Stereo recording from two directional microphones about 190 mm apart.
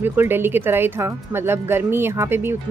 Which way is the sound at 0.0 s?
10° right (ahead or behind).